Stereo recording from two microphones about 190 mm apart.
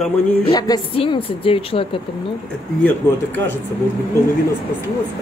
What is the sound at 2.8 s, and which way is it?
Speech, 10° left (ahead or behind).